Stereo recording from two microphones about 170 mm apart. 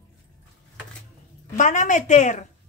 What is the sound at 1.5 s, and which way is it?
Speech, 50° left (ahead or behind).